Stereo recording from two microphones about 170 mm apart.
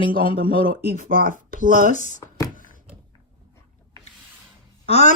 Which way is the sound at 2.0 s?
45° left (ahead or behind).